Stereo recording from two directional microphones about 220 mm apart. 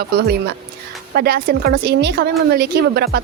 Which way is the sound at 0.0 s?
45° right (ahead or behind).